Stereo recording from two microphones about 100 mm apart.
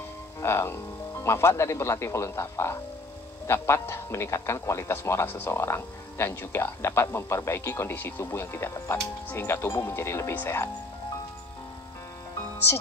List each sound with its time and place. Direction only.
0.4 s a man's voice: 25° left (ahead or behind)